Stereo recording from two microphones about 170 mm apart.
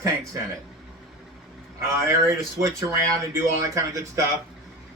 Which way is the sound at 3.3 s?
15° right (ahead or behind).